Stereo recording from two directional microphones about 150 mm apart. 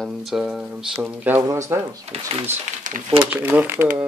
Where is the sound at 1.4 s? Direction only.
20° right (ahead or behind).